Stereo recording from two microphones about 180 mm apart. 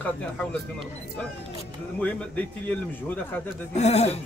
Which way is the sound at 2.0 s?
10° left (ahead or behind).